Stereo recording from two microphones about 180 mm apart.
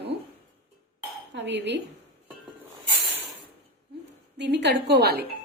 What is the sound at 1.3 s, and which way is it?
Speech, 75° right (ahead or behind).